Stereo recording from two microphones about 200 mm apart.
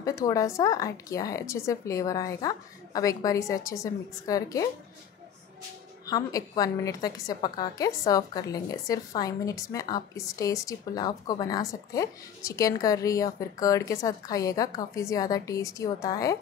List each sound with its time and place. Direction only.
0.0 s a woman's voice: 15° left (ahead or behind)
6.0 s a woman's voice: 20° left (ahead or behind)